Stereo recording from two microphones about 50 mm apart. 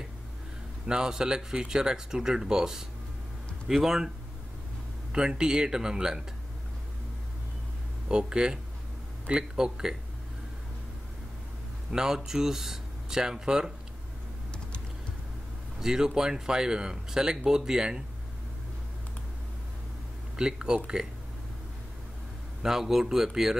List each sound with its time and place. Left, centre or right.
0.8 s speech: centre
5.1 s speech: centre
8.1 s speech: centre
11.9 s speech: centre
15.8 s speech: centre
20.3 s speech: centre
22.6 s speech: centre